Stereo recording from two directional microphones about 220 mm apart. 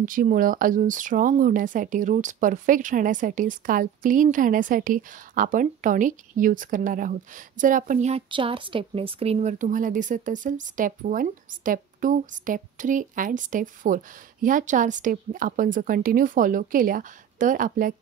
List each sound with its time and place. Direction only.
0.0 s speech: 35° right (ahead or behind)